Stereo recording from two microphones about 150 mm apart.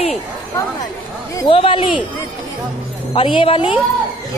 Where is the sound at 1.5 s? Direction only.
35° left (ahead or behind).